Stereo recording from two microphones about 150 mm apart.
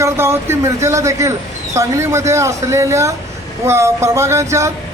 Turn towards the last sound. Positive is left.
turn(degrees=-20)  # may be behind; listen again after turning